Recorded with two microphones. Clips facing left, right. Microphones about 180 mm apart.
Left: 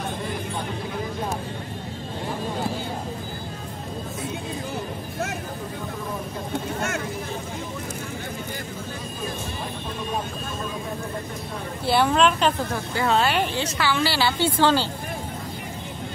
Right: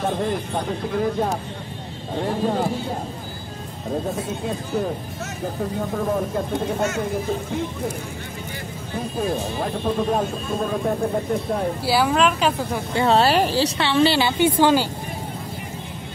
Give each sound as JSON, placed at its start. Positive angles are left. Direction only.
{"t": 11.8, "sound": "speech", "side_deg": -5}
{"t": 12.9, "sound": "a woman's voice", "side_deg": -30}